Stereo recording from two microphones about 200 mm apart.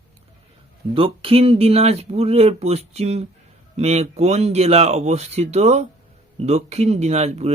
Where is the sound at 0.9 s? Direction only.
25° right (ahead or behind).